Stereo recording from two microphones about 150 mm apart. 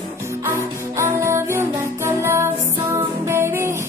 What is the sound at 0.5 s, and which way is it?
Music, 20° right (ahead or behind).